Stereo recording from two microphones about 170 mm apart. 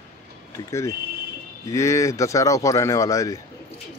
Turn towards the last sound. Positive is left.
turn(degrees=20)  # may be behind; listen again after turning